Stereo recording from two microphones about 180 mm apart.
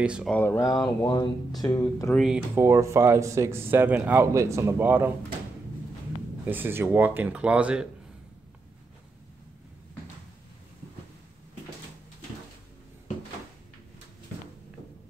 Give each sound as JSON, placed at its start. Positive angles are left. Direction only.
{"t": 0.0, "sound": "speech", "side_deg": -5}
{"t": 0.3, "sound": "speech", "side_deg": 10}
{"t": 1.8, "sound": "speech", "side_deg": 10}
{"t": 2.2, "sound": "speech", "side_deg": -10}
{"t": 6.4, "sound": "speech", "side_deg": -10}